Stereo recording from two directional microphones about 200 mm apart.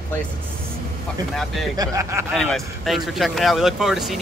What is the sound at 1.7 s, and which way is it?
Speech, 15° right (ahead or behind).